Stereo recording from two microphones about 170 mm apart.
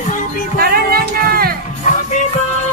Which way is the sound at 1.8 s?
45° left (ahead or behind).